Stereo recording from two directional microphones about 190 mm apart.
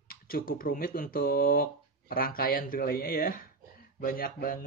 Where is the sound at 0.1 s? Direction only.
50° left (ahead or behind).